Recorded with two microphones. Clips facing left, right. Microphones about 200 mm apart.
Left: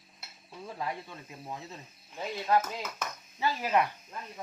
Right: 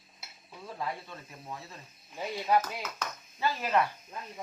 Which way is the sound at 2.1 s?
10° right (ahead or behind).